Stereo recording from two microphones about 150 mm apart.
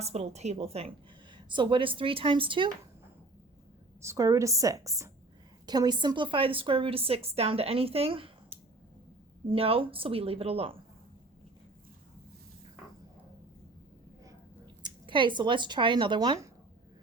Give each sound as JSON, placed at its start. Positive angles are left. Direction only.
{"t": 0.0, "sound": "a woman's voice", "side_deg": -45}
{"t": 4.0, "sound": "a woman's voice", "side_deg": -20}
{"t": 14.8, "sound": "speech", "side_deg": -30}